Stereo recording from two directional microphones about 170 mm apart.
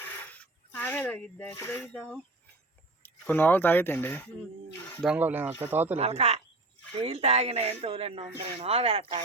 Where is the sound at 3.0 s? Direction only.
10° left (ahead or behind).